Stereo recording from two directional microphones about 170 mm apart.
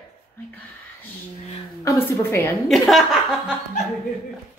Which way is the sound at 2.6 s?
Centre (ahead or behind).